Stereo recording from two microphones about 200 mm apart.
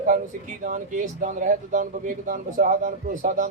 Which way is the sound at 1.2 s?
40° right (ahead or behind).